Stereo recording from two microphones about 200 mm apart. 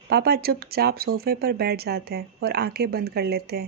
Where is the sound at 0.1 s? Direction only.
50° right (ahead or behind).